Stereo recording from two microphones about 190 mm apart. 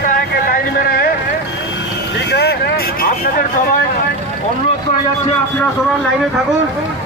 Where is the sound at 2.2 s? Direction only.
60° left (ahead or behind).